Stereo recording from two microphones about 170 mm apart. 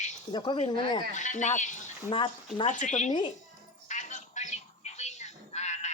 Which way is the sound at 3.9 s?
45° left (ahead or behind).